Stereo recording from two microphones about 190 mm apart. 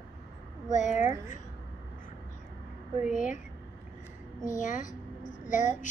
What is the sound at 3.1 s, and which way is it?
Child singing, 45° left (ahead or behind).